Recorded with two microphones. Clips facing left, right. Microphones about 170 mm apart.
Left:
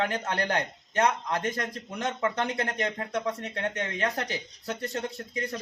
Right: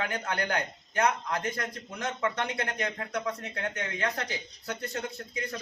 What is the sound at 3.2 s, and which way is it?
Speech, 20° left (ahead or behind).